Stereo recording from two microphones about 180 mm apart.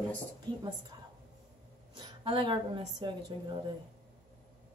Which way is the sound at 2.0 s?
25° right (ahead or behind).